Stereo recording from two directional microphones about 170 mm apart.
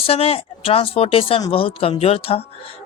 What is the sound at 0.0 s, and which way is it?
Speech, 35° left (ahead or behind).